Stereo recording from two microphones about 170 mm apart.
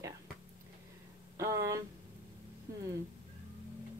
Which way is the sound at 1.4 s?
20° right (ahead or behind).